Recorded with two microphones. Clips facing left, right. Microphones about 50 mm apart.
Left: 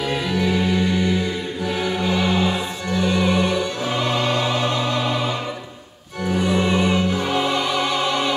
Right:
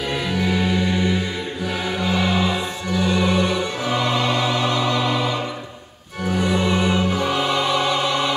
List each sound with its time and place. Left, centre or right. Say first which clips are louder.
0.1 s music: even; centre
2.9 s music: even; centre
6.3 s music: left 1 dB; centre
7.2 s music: even; left